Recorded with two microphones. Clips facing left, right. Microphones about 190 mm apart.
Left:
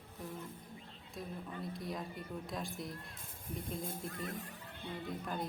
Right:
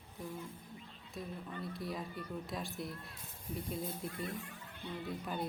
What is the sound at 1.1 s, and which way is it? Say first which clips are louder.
Speech: even; centre (ahead or behind).